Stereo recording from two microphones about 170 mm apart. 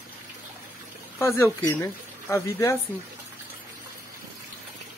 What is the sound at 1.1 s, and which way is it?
Speech, 15° left (ahead or behind).